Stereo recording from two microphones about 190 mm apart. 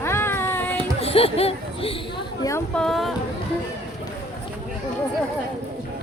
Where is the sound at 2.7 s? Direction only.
Centre (ahead or behind).